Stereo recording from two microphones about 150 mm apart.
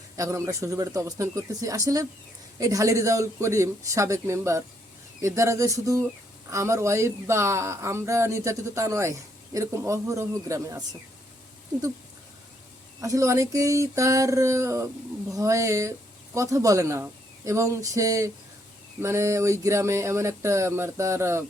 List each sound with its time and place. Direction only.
0.2 s speech: 20° right (ahead or behind)
13.0 s speech: 20° right (ahead or behind)